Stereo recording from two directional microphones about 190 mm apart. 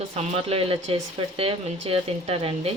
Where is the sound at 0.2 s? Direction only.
35° right (ahead or behind).